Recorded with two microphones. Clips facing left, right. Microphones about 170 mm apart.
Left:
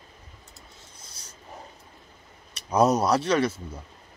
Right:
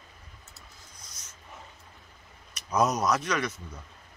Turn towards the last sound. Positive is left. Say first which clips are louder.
# left 7 dB
turn(degrees=30)  # may be behind; listen again after turning